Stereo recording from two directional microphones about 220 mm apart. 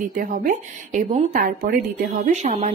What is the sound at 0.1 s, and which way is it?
Speech, 40° right (ahead or behind).